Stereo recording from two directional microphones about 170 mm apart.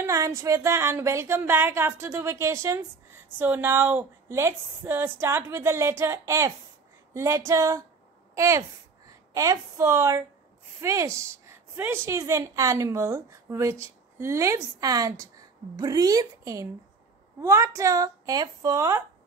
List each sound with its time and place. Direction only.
0.0 s a woman's voice: 15° right (ahead or behind)